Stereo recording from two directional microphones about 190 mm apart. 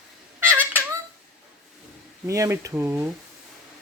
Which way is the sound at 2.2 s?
15° right (ahead or behind).